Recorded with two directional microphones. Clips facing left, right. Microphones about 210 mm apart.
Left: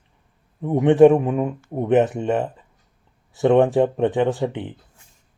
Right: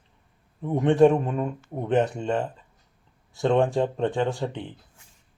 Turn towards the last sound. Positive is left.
turn(degrees=20)  # may be behind; listen again after turning